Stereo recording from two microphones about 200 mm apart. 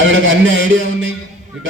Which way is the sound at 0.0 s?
70° right (ahead or behind).